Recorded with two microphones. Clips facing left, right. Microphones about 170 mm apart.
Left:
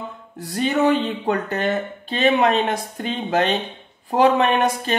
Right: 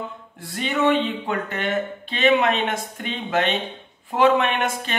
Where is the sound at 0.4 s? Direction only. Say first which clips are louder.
Left 4 dB; 40° left (ahead or behind).